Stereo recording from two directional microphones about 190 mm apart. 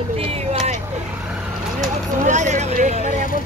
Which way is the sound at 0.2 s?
35° right (ahead or behind).